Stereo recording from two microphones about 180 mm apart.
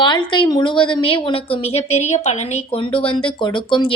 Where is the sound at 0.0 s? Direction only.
25° left (ahead or behind).